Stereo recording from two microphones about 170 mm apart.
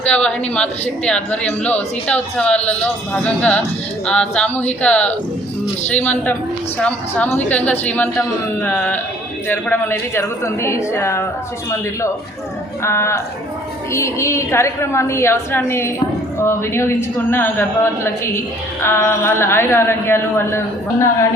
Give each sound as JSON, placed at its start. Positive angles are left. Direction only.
{"t": 0.0, "sound": "a woman's voice", "side_deg": 5}
{"t": 12.8, "sound": "a woman's voice", "side_deg": 15}